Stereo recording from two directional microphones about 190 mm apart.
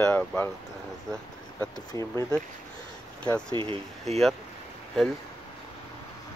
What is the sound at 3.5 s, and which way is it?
Speech, 25° right (ahead or behind).